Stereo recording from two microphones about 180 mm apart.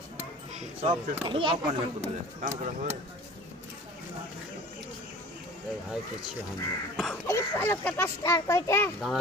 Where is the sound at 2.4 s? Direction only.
45° right (ahead or behind).